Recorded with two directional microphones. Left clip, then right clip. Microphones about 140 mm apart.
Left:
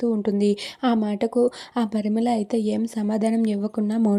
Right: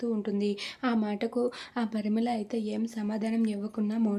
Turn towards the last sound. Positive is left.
turn(degrees=55)  # may be behind; listen again after turning